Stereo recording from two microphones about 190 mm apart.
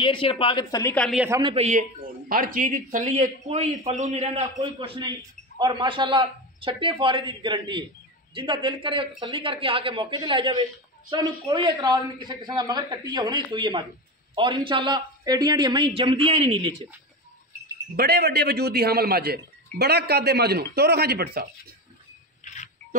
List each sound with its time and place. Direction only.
0.0 s speech: 30° left (ahead or behind)
0.9 s speech: 5° left (ahead or behind)
1.4 s a man's voice: 35° right (ahead or behind)
17.9 s a man's voice: 55° right (ahead or behind)
22.4 s a sound: 40° left (ahead or behind)